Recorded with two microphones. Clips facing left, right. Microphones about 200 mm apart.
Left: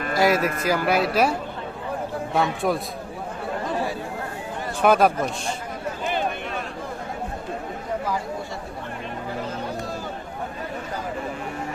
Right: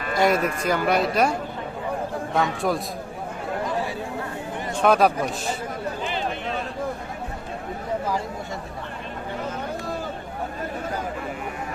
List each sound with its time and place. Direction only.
0.2 s a man's voice: 5° left (ahead or behind)
4.8 s a man's voice: centre (ahead or behind)
5.1 s a man's voice: 15° right (ahead or behind)
6.1 s a sound: 50° left (ahead or behind)